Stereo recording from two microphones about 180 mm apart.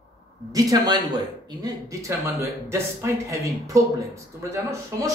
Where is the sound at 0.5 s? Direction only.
20° right (ahead or behind).